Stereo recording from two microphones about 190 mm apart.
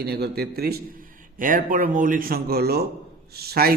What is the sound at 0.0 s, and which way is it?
Speech, 60° right (ahead or behind).